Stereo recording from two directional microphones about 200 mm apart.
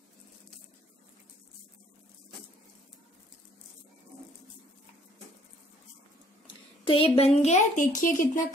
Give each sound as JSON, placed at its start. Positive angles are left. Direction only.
{"t": 6.4, "sound": "a woman's voice", "side_deg": 25}